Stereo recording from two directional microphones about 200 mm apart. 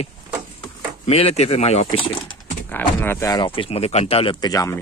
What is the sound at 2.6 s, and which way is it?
Speech, 10° left (ahead or behind).